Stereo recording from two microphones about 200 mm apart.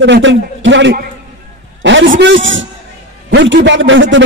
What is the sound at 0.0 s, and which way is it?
A man's voice, 65° right (ahead or behind).